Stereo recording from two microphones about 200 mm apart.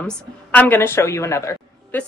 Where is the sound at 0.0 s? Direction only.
5° left (ahead or behind).